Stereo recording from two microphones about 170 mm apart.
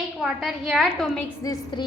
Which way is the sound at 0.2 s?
Centre (ahead or behind).